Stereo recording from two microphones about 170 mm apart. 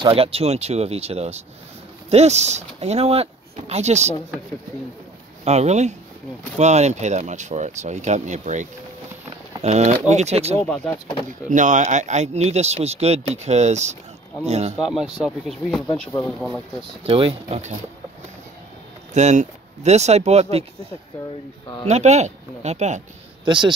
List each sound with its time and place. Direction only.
0.0 s speech: 35° right (ahead or behind)
5.4 s speech: 40° right (ahead or behind)
10.6 s speech: 5° left (ahead or behind)
11.4 s speech: 50° right (ahead or behind)
14.8 s speech: centre (ahead or behind)
16.1 s speech: 15° left (ahead or behind)
17.0 s speech: 30° right (ahead or behind)
19.1 s speech: 45° right (ahead or behind)
21.8 s speech: 40° right (ahead or behind)
23.4 s speech: 25° right (ahead or behind)